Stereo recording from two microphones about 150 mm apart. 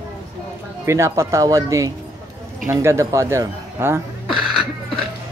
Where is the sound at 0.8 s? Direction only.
20° right (ahead or behind).